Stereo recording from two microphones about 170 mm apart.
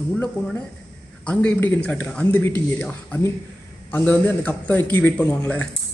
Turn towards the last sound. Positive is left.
turn(degrees=10)  # may be behind; listen again after turning